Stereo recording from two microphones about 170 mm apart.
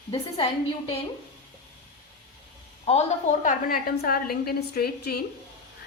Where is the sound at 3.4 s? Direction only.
60° left (ahead or behind).